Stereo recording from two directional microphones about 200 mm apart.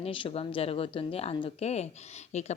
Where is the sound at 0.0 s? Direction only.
25° left (ahead or behind).